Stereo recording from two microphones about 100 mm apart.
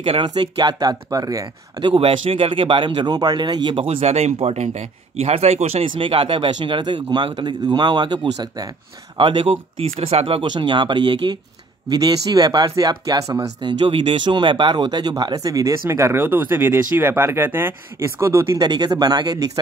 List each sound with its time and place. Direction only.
0.2 s speech: 45° right (ahead or behind)
1.8 s speech: 60° right (ahead or behind)
3.7 s speech: 70° right (ahead or behind); by 8.6 s 45° right (ahead or behind)
9.1 s speech: 55° right (ahead or behind); by 10.4 s 75° right (ahead or behind)
10.4 s speech: 50° right (ahead or behind); by 18.6 s 30° right (ahead or behind)
18.6 s speech: 45° right (ahead or behind)